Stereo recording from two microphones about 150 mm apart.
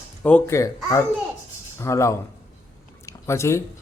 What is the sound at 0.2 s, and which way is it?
Speech, 10° left (ahead or behind).